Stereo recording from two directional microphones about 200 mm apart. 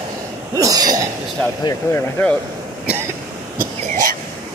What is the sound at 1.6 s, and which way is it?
Speech, 15° left (ahead or behind).